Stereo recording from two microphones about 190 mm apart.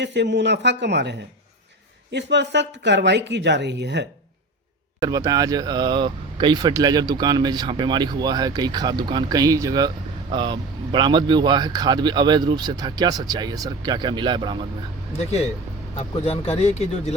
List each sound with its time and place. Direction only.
0.0 s speech: 65° right (ahead or behind)
2.1 s speech: 65° right (ahead or behind)
4.9 s speech: 20° right (ahead or behind)
16.0 s speech: 30° left (ahead or behind)